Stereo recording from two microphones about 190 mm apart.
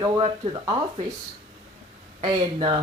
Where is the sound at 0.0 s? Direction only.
35° right (ahead or behind).